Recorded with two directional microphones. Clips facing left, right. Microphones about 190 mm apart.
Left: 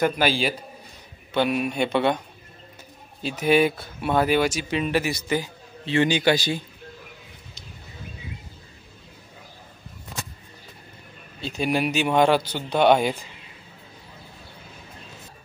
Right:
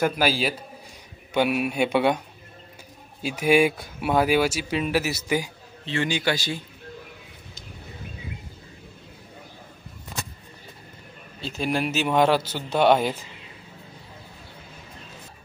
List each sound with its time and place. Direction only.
0.0 s a man's voice: 5° right (ahead or behind)
5.9 s a man's voice: 20° left (ahead or behind)
11.4 s a man's voice: centre (ahead or behind)